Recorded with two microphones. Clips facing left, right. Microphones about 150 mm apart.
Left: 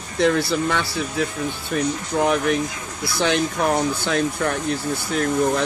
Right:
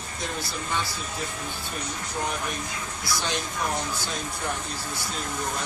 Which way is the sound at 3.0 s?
60° left (ahead or behind).